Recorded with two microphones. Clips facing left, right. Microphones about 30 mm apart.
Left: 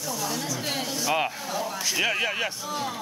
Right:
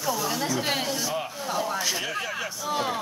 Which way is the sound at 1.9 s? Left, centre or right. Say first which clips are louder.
Left 5 dB; left.